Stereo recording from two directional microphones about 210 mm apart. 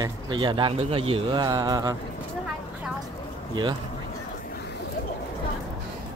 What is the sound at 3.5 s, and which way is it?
Speech, 20° right (ahead or behind).